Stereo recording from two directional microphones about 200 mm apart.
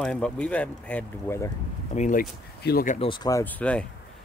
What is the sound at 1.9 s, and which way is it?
Speech, 40° left (ahead or behind).